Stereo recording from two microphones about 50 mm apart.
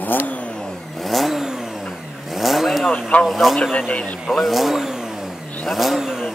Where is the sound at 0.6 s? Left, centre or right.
Centre.